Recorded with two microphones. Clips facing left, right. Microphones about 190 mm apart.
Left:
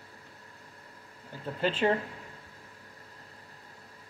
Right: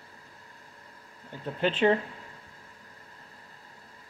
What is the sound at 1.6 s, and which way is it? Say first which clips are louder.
Speech: right 2 dB; 10° left (ahead or behind).